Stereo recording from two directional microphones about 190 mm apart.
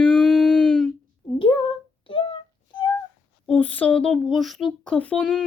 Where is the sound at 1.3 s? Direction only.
25° left (ahead or behind).